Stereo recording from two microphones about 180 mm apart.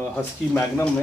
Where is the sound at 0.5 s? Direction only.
15° left (ahead or behind).